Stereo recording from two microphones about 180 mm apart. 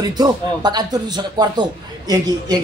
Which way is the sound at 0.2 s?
25° right (ahead or behind).